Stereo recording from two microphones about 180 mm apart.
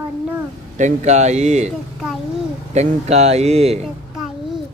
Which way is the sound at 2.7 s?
40° right (ahead or behind).